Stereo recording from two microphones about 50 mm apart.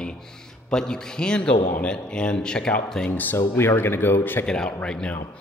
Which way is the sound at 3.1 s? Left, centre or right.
Left.